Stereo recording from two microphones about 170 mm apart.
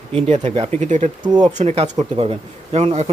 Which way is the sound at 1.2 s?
25° right (ahead or behind).